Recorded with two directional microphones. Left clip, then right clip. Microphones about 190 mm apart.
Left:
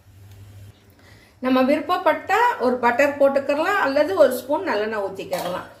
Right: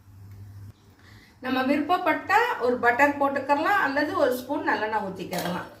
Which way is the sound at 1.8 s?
40° left (ahead or behind).